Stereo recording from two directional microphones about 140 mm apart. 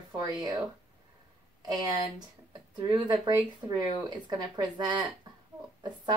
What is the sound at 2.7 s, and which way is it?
Speech, 30° right (ahead or behind).